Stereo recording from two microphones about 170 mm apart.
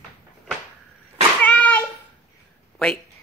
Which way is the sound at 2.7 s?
5° left (ahead or behind).